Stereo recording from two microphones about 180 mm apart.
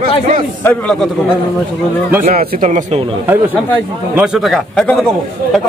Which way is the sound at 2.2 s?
50° right (ahead or behind).